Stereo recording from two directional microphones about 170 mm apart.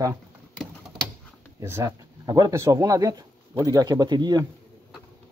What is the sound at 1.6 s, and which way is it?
Speech, 15° right (ahead or behind).